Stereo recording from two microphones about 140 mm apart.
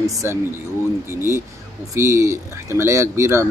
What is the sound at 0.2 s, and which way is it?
Speech, 15° right (ahead or behind).